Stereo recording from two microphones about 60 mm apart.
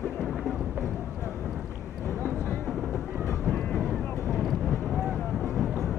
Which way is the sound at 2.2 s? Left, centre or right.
Left.